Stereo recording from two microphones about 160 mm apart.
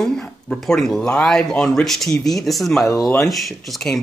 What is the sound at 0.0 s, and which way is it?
Speech, centre (ahead or behind).